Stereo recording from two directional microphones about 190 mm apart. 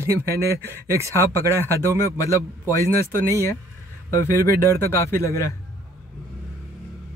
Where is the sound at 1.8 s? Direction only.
15° left (ahead or behind).